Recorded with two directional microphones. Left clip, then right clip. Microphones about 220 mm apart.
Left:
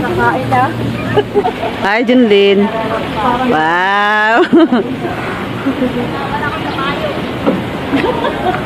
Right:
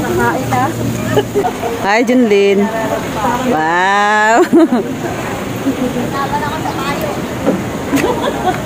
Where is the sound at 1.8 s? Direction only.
Centre (ahead or behind).